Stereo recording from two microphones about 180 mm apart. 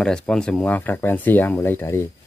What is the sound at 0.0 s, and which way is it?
Speech, 5° left (ahead or behind).